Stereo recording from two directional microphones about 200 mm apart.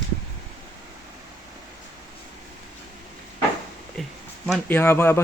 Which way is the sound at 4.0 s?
Centre (ahead or behind).